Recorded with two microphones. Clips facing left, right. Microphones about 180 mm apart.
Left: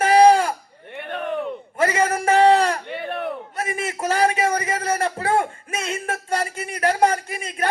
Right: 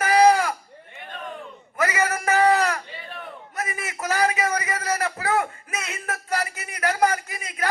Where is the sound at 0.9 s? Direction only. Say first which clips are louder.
Left 10 dB; 65° left (ahead or behind).